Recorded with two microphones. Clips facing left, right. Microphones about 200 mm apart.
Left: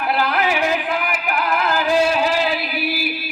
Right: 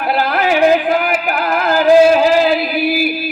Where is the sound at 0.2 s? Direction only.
35° right (ahead or behind).